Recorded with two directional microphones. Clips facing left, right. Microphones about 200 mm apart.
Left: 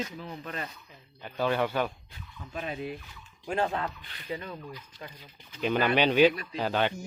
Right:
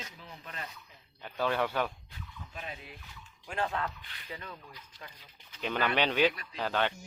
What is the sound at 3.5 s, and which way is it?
Speech, 30° left (ahead or behind).